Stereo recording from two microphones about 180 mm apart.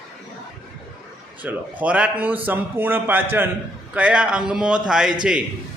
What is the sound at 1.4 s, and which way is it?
A man's voice, 10° right (ahead or behind).